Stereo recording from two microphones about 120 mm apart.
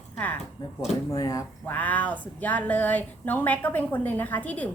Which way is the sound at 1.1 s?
30° left (ahead or behind).